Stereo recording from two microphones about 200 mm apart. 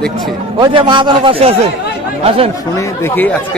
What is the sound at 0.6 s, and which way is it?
A man's voice, 25° right (ahead or behind).